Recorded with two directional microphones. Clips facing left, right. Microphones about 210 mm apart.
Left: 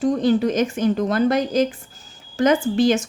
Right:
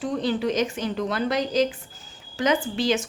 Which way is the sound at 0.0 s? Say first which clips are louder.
Left 7 dB; 45° left (ahead or behind).